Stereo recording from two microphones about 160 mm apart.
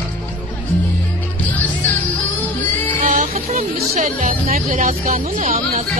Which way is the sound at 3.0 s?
45° right (ahead or behind).